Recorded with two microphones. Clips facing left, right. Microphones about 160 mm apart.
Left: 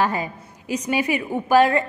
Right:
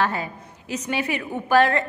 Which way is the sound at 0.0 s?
10° left (ahead or behind).